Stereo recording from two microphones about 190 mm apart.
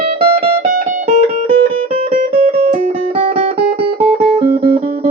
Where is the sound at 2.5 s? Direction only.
50° right (ahead or behind).